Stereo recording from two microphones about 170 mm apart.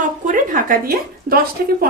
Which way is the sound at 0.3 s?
50° right (ahead or behind).